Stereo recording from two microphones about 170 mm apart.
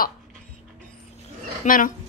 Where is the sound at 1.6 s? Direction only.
50° left (ahead or behind).